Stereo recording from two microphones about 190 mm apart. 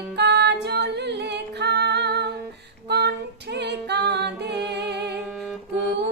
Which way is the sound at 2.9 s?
60° right (ahead or behind).